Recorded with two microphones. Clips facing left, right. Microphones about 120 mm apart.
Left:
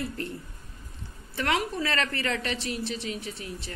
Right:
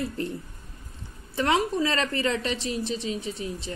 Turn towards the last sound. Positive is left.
turn(degrees=-20)  # may be behind; listen again after turning